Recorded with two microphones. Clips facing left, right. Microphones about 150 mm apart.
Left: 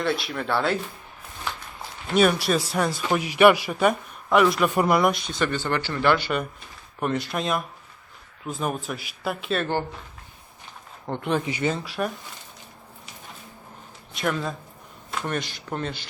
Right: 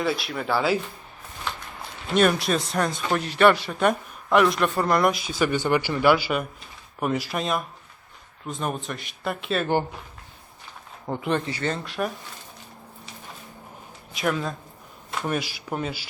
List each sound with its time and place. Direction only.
0.0 s speech: centre (ahead or behind)
2.1 s speech: centre (ahead or behind)
4.7 s speech: 15° left (ahead or behind)
4.9 s speech: centre (ahead or behind)
11.0 s speech: centre (ahead or behind)
11.4 s speech: 15° left (ahead or behind)
11.7 s speech: centre (ahead or behind)
14.1 s speech: centre (ahead or behind)